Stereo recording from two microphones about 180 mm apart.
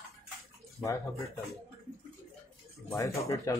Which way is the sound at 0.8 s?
15° left (ahead or behind).